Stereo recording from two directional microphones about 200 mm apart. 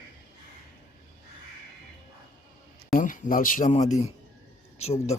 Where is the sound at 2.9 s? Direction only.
40° left (ahead or behind).